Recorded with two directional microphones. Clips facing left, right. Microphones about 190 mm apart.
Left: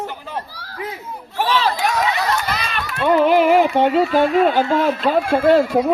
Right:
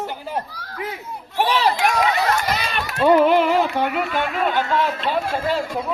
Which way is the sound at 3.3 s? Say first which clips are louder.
Left 3 dB; 10° left (ahead or behind).